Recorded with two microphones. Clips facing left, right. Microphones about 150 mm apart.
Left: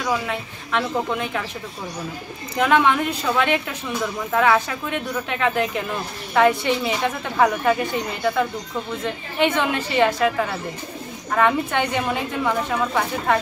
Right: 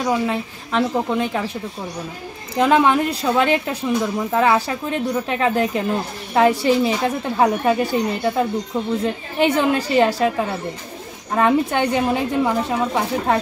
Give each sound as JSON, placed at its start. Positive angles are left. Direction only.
{"t": 0.0, "sound": "a woman's voice", "side_deg": -30}
{"t": 2.5, "sound": "a woman's voice", "side_deg": -35}
{"t": 11.3, "sound": "a woman's voice", "side_deg": -30}